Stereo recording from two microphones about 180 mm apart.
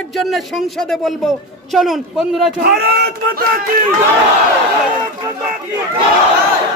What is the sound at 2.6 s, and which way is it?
Speech, 60° right (ahead or behind).